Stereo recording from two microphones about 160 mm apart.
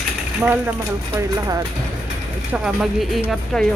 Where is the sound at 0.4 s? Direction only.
10° right (ahead or behind).